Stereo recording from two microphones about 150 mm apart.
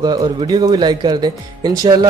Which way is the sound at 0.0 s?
25° right (ahead or behind).